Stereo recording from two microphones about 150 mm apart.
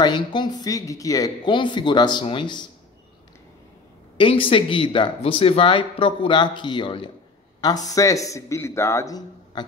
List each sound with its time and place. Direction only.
0.0 s speech: 30° left (ahead or behind)
4.2 s a man's voice: 35° left (ahead or behind)